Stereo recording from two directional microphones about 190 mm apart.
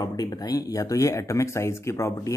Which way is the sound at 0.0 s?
20° left (ahead or behind).